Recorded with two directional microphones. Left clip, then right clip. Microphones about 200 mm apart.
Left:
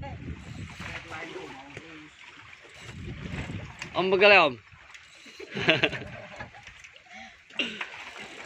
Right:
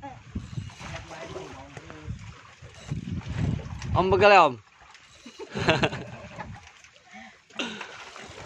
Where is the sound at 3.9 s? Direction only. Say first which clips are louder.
Right 2 dB; 10° right (ahead or behind).